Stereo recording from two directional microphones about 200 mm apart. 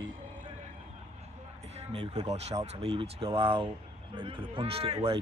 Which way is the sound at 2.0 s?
20° right (ahead or behind).